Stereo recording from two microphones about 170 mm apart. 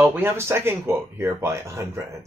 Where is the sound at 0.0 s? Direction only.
10° right (ahead or behind).